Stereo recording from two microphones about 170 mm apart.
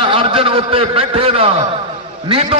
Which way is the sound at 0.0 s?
30° right (ahead or behind).